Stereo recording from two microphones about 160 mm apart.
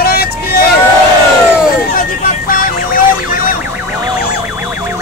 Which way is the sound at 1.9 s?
65° left (ahead or behind).